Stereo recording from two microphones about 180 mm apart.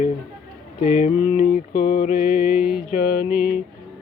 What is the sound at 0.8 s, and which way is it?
Mantra, 45° left (ahead or behind).